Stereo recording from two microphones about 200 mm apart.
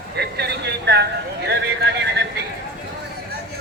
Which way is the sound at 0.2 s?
55° right (ahead or behind).